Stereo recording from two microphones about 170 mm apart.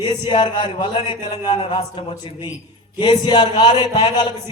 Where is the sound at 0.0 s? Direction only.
25° left (ahead or behind).